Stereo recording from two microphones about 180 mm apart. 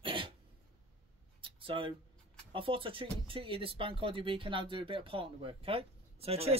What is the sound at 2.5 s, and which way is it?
Speech, 30° right (ahead or behind).